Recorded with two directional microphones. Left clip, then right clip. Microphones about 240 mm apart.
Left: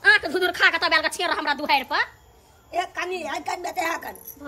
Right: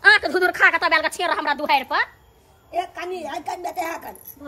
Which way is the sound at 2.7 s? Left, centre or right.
Centre.